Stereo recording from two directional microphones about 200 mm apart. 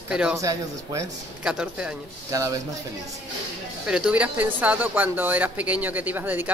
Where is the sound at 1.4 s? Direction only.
5° right (ahead or behind).